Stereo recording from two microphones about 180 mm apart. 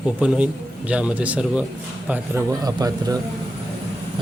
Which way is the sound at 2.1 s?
15° right (ahead or behind).